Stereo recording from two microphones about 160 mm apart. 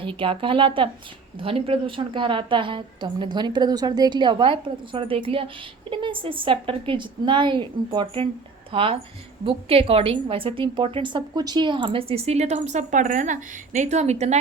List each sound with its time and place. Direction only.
0.0 s a woman's voice: 30° right (ahead or behind)